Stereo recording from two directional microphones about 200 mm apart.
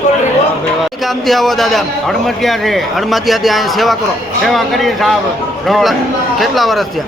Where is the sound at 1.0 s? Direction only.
Centre (ahead or behind).